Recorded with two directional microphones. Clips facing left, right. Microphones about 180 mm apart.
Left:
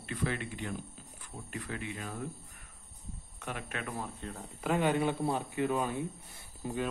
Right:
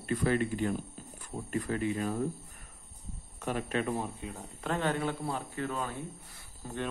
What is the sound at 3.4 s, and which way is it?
Speech, 30° right (ahead or behind).